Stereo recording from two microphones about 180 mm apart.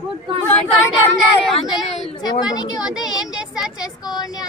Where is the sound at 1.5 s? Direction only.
Centre (ahead or behind).